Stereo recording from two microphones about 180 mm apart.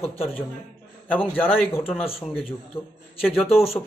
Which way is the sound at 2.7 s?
30° left (ahead or behind).